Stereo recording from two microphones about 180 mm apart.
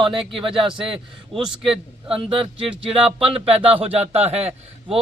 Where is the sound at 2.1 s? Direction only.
30° right (ahead or behind).